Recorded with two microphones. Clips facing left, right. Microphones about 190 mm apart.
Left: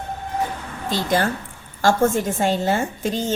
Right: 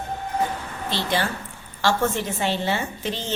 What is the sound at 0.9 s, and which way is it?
A woman's voice, 45° left (ahead or behind).